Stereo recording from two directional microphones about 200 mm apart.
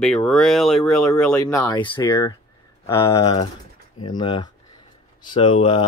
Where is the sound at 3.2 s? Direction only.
30° left (ahead or behind).